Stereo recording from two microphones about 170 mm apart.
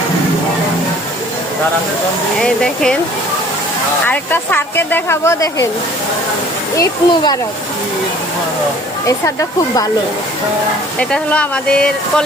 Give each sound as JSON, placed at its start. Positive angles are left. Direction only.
{"t": 2.4, "sound": "speech", "side_deg": 5}
{"t": 4.0, "sound": "speech", "side_deg": 10}
{"t": 6.7, "sound": "speech", "side_deg": 25}
{"t": 9.0, "sound": "speech", "side_deg": 20}
{"t": 11.1, "sound": "speech", "side_deg": 5}